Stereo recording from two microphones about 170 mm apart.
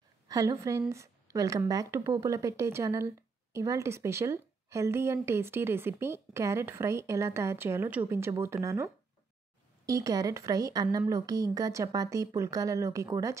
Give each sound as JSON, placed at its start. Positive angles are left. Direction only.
{"t": 0.3, "sound": "a woman's voice", "side_deg": -20}